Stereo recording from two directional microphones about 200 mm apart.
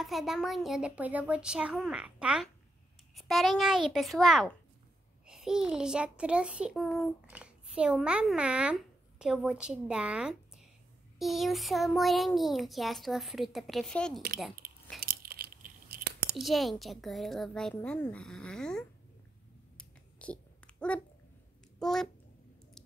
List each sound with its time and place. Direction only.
0.0 s a child's voice: centre (ahead or behind)
15.0 s a sound: 50° right (ahead or behind)
16.3 s a child's voice: centre (ahead or behind)
19.8 s dog: 5° left (ahead or behind)
21.7 s speech: centre (ahead or behind)